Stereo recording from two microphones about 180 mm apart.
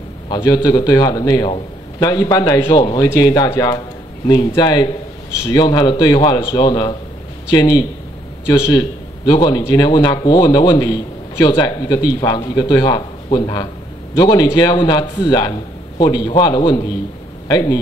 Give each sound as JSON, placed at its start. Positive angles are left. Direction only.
{"t": 0.3, "sound": "a man's voice", "side_deg": 25}